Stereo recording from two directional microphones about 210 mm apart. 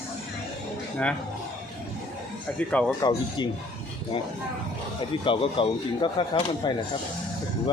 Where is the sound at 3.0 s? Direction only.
20° left (ahead or behind).